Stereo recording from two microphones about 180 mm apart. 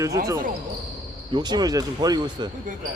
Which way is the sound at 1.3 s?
25° right (ahead or behind).